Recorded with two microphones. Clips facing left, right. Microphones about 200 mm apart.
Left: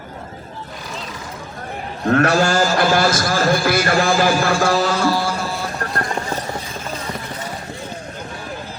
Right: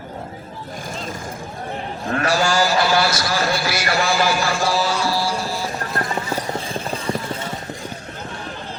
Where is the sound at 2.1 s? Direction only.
65° left (ahead or behind).